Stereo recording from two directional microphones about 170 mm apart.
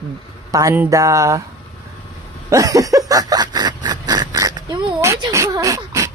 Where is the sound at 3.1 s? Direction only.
20° right (ahead or behind).